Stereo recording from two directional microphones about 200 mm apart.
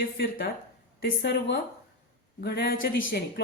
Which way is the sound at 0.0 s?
50° left (ahead or behind).